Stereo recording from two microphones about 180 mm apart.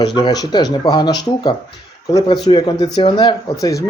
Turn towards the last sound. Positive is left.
turn(degrees=20)  # may be behind; listen again after turning